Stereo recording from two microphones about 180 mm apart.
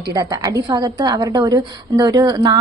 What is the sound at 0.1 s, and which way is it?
A woman's voice, 20° right (ahead or behind).